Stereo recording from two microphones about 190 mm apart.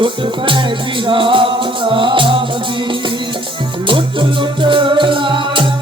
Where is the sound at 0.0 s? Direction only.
25° right (ahead or behind).